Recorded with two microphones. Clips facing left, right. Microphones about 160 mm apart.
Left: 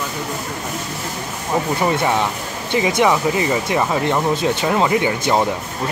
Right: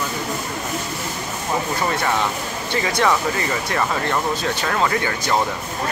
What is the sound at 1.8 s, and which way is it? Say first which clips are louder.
Speech: left 4 dB; 15° left (ahead or behind).